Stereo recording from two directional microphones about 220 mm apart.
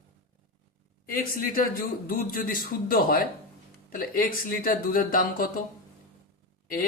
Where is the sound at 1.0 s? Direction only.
40° left (ahead or behind).